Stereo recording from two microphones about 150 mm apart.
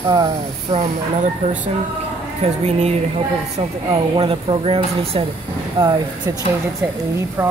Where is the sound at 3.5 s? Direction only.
30° right (ahead or behind).